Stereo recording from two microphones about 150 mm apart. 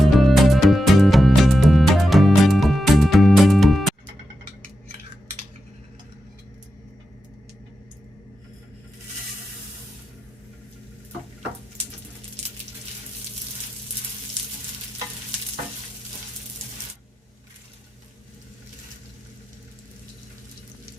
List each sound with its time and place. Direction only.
0.0 s music: centre (ahead or behind)